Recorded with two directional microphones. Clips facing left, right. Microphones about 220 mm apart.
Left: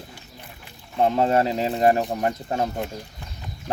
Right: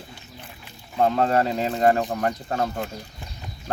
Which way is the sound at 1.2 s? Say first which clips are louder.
Left 1 dB; 25° left (ahead or behind).